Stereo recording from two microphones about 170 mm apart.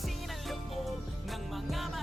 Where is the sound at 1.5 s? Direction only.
Centre (ahead or behind).